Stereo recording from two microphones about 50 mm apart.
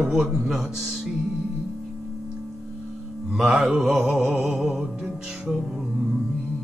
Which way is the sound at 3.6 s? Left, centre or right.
Centre.